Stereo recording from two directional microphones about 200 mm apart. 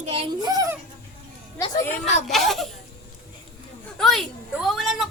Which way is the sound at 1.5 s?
15° left (ahead or behind).